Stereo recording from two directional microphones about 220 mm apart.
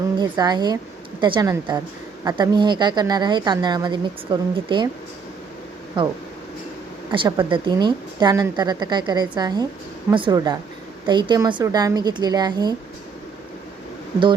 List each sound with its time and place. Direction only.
0.2 s a woman's voice: 20° right (ahead or behind)
6.0 s a woman's voice: 20° right (ahead or behind)